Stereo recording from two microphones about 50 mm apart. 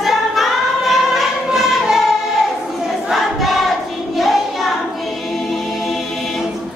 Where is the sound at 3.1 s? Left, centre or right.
Centre.